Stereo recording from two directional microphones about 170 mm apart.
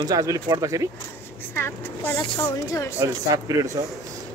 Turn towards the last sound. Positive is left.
turn(degrees=-20)  # may be behind; listen again after turning